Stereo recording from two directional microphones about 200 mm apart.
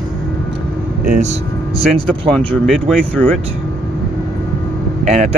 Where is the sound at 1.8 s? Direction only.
5° left (ahead or behind).